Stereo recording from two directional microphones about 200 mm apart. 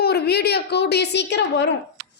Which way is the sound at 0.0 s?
55° left (ahead or behind).